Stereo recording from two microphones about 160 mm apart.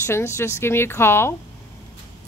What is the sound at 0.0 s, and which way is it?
Speech, 15° left (ahead or behind).